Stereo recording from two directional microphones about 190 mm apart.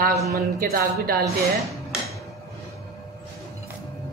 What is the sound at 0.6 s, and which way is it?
Speech, 55° right (ahead or behind).